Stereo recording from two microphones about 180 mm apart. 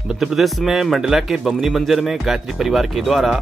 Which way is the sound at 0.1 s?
5° right (ahead or behind).